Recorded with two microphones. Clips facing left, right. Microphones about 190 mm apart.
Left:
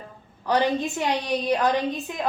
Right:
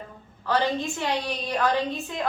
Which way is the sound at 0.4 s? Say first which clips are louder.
Left 2 dB; 15° left (ahead or behind).